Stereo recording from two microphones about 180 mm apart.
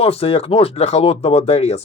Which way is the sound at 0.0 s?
35° left (ahead or behind).